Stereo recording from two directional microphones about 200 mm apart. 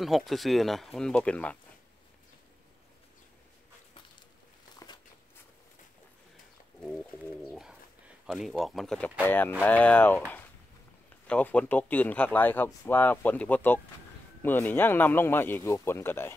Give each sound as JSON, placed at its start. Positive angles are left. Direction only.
{"t": 0.0, "sound": "speech", "side_deg": 0}
{"t": 4.7, "sound": "walk", "side_deg": 20}
{"t": 6.8, "sound": "a sound", "side_deg": 5}
{"t": 8.3, "sound": "speech", "side_deg": 0}
{"t": 11.2, "sound": "speech", "side_deg": 5}